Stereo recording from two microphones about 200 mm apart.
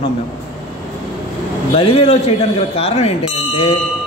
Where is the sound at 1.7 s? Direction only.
30° left (ahead or behind).